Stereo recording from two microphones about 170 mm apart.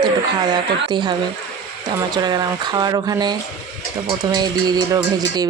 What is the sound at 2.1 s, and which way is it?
Speech, 25° right (ahead or behind).